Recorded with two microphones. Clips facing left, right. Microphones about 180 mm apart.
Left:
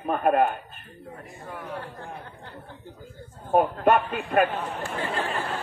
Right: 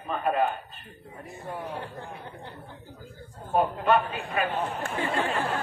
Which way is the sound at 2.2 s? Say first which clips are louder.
Right 2 dB; 20° right (ahead or behind).